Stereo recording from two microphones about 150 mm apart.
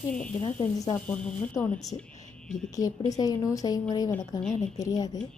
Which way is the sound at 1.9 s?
30° left (ahead or behind).